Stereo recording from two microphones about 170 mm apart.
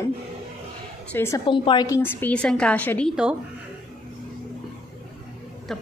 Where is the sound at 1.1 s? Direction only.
15° left (ahead or behind).